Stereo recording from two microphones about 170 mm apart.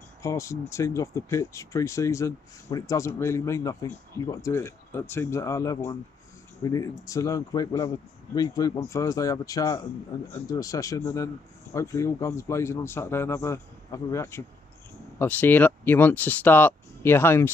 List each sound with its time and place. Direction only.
0.2 s speech: 20° left (ahead or behind)